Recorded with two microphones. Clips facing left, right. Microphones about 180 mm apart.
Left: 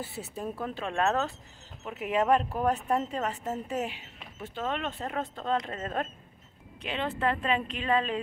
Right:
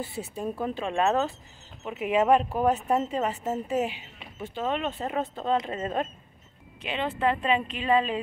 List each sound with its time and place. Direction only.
0.0 s speech: 5° left (ahead or behind)